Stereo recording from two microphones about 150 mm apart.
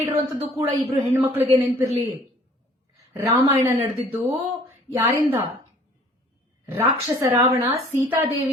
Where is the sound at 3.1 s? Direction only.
15° right (ahead or behind).